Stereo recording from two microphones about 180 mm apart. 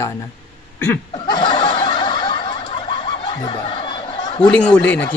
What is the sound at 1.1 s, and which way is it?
Snicker, 25° left (ahead or behind).